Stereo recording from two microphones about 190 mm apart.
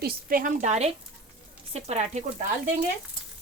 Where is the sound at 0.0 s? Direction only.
50° right (ahead or behind); by 2.2 s 35° right (ahead or behind).